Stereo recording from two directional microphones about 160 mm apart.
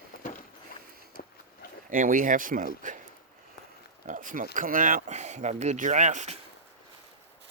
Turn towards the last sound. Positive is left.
turn(degrees=-50)  # may be behind; listen again after turning